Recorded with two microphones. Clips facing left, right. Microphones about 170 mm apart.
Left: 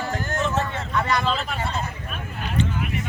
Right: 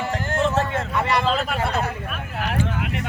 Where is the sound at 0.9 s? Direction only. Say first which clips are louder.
Right 1 dB; 30° right (ahead or behind).